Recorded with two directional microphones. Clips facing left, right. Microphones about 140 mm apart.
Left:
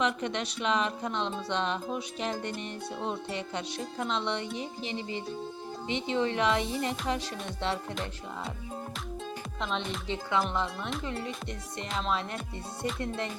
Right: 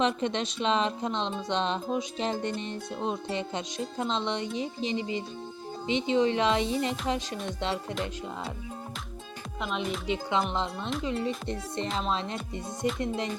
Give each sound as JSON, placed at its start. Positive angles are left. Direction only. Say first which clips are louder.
{"t": 0.0, "sound": "speech", "louder": "right 3 dB", "side_deg": -25}
{"t": 9.6, "sound": "speech", "louder": "right 3 dB", "side_deg": -5}
{"t": 10.1, "sound": "music", "louder": "right 1 dB", "side_deg": -20}
{"t": 11.0, "sound": "speech", "louder": "right 5 dB", "side_deg": -25}
{"t": 12.8, "sound": "music", "louder": "right 3 dB", "side_deg": -15}